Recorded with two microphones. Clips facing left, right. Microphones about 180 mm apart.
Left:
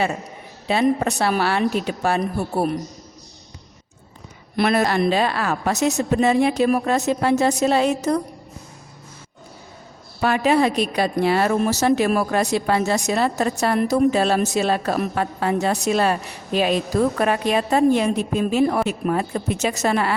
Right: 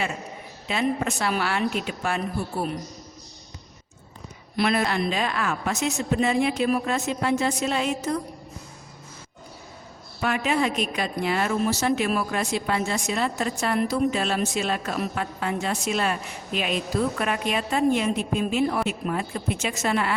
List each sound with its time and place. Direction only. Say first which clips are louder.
0.7 s a woman's voice: left 6 dB; 35° left (ahead or behind)
4.7 s a woman's voice: left 8 dB; 40° left (ahead or behind)
10.2 s a woman's voice: left 6 dB; 35° left (ahead or behind)